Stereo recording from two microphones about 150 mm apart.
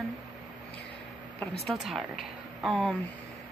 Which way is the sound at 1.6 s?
Centre (ahead or behind).